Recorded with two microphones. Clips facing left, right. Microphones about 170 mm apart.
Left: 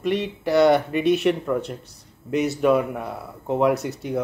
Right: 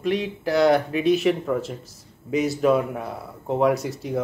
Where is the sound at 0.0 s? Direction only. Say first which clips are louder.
Even; centre (ahead or behind).